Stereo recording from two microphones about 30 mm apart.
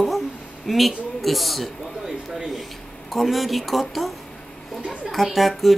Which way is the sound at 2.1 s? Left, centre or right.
Centre.